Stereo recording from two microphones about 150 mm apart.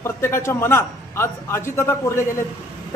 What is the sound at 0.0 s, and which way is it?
A man's voice, 15° left (ahead or behind).